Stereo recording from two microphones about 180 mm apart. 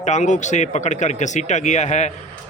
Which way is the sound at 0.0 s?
40° left (ahead or behind).